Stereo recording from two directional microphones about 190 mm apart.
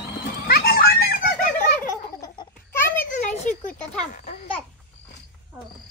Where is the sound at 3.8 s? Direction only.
5° left (ahead or behind).